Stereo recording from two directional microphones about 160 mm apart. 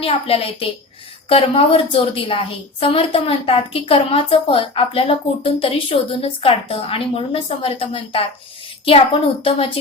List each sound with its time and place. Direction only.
0.0 s a woman's voice: 35° left (ahead or behind)